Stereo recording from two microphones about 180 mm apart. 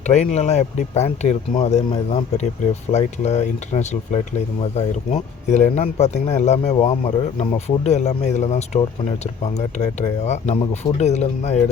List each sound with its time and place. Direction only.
0.0 s speech: 40° left (ahead or behind)